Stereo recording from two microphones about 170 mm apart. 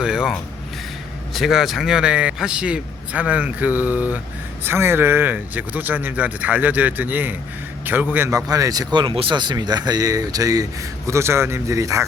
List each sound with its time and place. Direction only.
0.0 s a man's voice: 5° right (ahead or behind)